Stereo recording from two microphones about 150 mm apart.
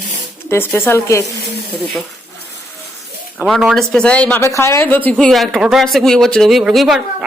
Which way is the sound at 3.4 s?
Centre (ahead or behind).